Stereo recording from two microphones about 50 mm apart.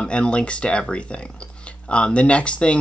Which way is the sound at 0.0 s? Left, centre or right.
Left.